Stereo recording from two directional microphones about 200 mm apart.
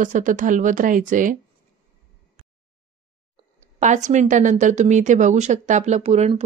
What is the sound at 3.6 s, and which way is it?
Speech, 35° right (ahead or behind).